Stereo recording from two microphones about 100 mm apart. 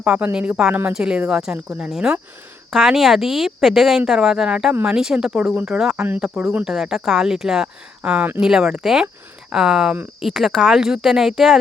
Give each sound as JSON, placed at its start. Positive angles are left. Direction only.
{"t": 0.0, "sound": "speech", "side_deg": -15}
{"t": 4.9, "sound": "speech", "side_deg": -5}